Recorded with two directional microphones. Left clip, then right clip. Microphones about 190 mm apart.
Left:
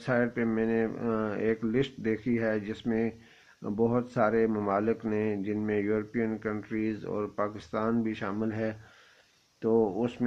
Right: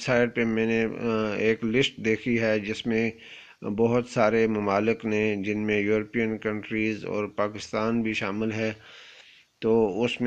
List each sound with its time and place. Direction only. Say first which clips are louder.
0.0 s speech: right 5 dB; 30° right (ahead or behind)